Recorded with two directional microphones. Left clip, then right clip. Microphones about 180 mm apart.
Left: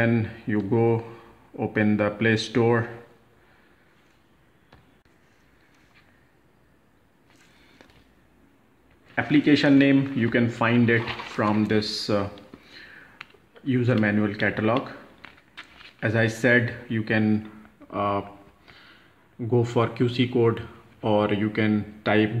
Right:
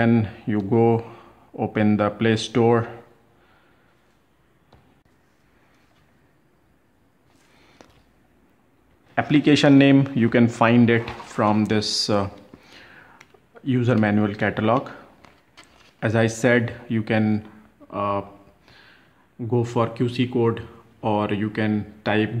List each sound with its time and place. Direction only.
0.0 s speech: 30° right (ahead or behind)
9.1 s speech: 35° right (ahead or behind)
16.0 s speech: 35° right (ahead or behind)
17.8 s speech: 15° right (ahead or behind)
19.5 s speech: 15° right (ahead or behind)